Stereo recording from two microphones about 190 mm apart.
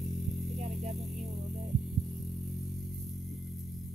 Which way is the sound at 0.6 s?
35° right (ahead or behind).